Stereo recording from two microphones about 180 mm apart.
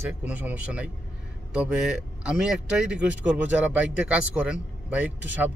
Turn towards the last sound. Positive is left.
turn(degrees=-5)  # may be behind; listen again after turning